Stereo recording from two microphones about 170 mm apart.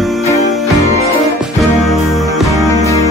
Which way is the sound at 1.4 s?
Centre (ahead or behind).